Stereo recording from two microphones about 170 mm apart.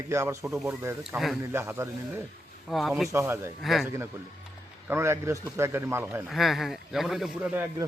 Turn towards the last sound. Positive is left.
turn(degrees=-10)  # may be behind; listen again after turning